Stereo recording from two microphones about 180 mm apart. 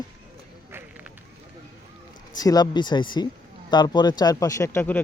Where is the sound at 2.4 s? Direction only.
20° left (ahead or behind).